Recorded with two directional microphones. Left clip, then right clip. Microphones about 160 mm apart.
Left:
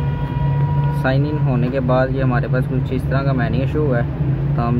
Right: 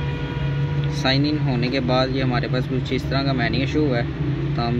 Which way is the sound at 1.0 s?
Centre (ahead or behind).